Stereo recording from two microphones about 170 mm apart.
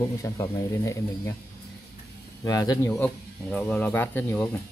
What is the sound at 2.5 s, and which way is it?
Speech, 20° left (ahead or behind).